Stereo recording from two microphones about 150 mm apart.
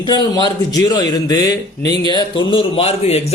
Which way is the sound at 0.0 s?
30° left (ahead or behind).